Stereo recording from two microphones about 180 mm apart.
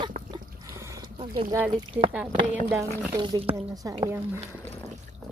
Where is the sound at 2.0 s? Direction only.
15° right (ahead or behind).